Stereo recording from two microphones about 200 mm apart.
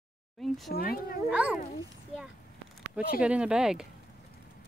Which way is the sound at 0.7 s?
50° left (ahead or behind).